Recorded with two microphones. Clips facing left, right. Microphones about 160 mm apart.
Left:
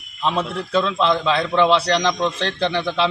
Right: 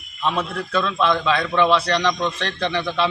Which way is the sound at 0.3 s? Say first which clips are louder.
Left 4 dB; 25° left (ahead or behind).